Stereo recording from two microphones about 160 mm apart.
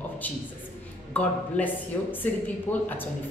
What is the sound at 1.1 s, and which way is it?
A woman's voice, 10° left (ahead or behind).